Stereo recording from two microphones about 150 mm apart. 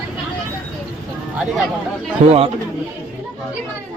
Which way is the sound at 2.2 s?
40° right (ahead or behind).